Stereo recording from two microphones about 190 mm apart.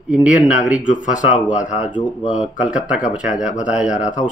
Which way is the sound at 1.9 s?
25° left (ahead or behind).